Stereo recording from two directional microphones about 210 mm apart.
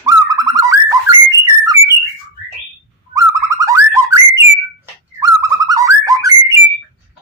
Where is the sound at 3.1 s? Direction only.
15° right (ahead or behind).